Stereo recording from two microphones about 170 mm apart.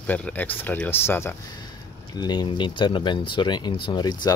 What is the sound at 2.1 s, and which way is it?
Speech, 25° left (ahead or behind).